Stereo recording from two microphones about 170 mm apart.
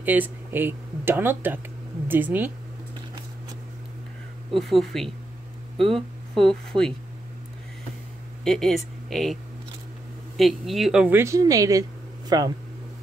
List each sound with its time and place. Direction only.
0.0 s speech: 10° right (ahead or behind)
4.5 s a woman's voice: centre (ahead or behind)
8.5 s a woman's voice: centre (ahead or behind); by 12.5 s 20° right (ahead or behind)